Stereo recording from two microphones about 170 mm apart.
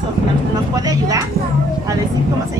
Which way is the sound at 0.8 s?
20° right (ahead or behind).